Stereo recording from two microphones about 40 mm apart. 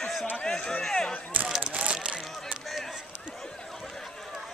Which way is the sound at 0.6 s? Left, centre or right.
Left.